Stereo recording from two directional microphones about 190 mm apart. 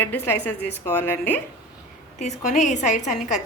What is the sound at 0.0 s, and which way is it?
A woman's voice, 10° left (ahead or behind).